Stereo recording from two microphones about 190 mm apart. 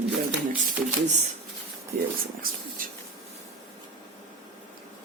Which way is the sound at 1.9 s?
45° right (ahead or behind).